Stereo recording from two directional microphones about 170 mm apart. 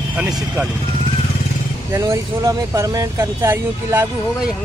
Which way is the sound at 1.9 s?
20° right (ahead or behind).